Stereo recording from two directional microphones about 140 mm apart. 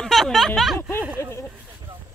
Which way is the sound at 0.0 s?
Centre (ahead or behind).